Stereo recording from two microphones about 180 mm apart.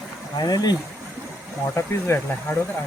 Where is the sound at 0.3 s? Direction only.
20° left (ahead or behind).